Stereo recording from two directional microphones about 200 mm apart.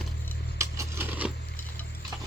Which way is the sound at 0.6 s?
15° right (ahead or behind).